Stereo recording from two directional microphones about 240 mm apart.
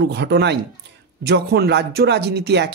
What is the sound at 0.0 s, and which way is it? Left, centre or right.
Speech, right.